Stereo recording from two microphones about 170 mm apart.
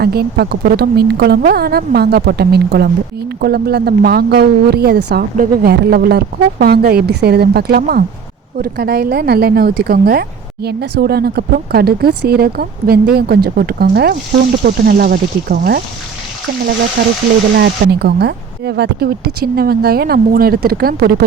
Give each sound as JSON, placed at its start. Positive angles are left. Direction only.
{"t": 0.0, "sound": "speech", "side_deg": -70}
{"t": 17.0, "sound": "speech", "side_deg": -65}